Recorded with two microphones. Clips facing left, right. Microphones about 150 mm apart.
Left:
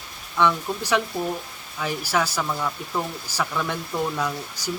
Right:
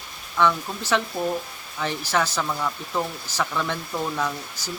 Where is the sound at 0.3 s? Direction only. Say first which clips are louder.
Even; 15° left (ahead or behind).